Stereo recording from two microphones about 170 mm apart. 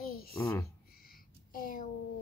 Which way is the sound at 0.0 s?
60° left (ahead or behind).